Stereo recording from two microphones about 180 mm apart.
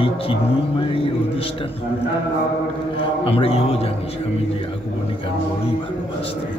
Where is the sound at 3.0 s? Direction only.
30° left (ahead or behind).